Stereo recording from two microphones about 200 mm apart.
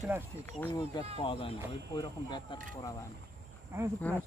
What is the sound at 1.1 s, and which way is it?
Speech, 25° left (ahead or behind).